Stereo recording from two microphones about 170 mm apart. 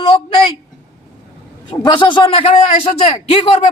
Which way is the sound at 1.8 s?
30° left (ahead or behind).